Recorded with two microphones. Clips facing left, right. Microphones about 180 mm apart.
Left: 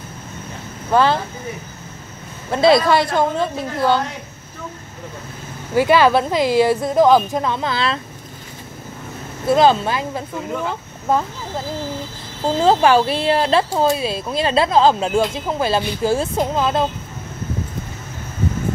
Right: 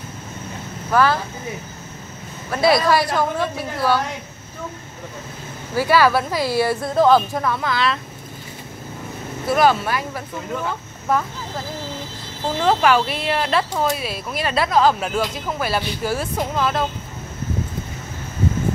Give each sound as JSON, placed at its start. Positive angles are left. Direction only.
{"t": 0.9, "sound": "a woman's voice", "side_deg": 25}
{"t": 2.5, "sound": "a woman's voice", "side_deg": 25}
{"t": 5.8, "sound": "a woman's voice", "side_deg": 20}
{"t": 9.5, "sound": "a woman's voice", "side_deg": 25}
{"t": 12.5, "sound": "a woman's voice", "side_deg": 30}